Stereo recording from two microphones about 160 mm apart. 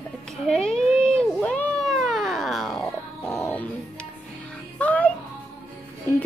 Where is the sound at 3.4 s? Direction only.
10° left (ahead or behind).